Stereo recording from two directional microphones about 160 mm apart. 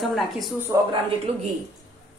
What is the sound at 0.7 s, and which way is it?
Speech, 20° right (ahead or behind).